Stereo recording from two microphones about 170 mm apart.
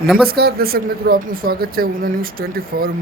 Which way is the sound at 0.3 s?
65° right (ahead or behind).